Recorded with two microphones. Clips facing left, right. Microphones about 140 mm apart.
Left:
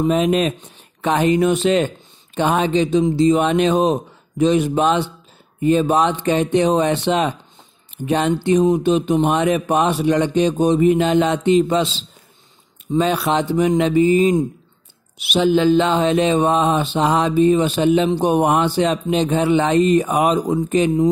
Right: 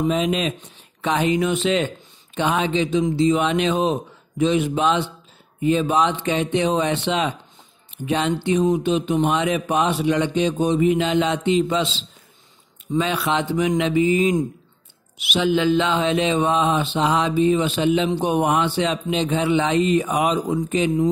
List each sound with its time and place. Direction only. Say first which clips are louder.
0.1 s mantra: left 5 dB; 50° left (ahead or behind)
2.3 s speech: left 4 dB; 45° left (ahead or behind)
5.6 s mantra: left 3 dB; 45° left (ahead or behind)
12.9 s speech: left 4 dB; 40° left (ahead or behind)
15.3 s mantra: left 4 dB; 35° left (ahead or behind)